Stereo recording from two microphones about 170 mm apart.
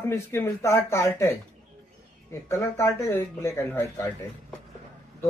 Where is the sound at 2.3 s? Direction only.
15° left (ahead or behind).